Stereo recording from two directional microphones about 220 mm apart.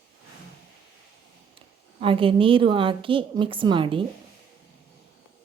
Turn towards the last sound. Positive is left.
turn(degrees=-20)  # may be behind; listen again after turning